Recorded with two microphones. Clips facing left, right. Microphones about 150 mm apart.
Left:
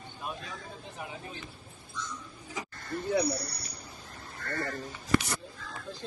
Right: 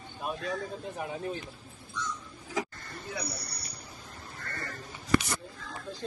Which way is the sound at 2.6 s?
90° right.